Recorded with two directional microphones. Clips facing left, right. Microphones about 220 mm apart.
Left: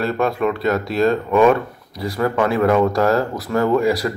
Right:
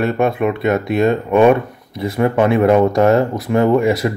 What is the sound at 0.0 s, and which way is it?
Speech, 20° right (ahead or behind).